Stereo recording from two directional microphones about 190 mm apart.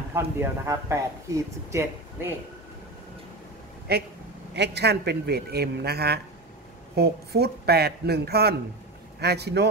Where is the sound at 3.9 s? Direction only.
55° right (ahead or behind).